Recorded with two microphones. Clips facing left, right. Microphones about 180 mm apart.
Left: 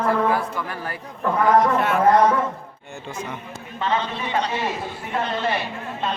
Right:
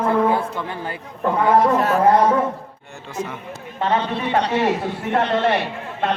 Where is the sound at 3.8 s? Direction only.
60° right (ahead or behind).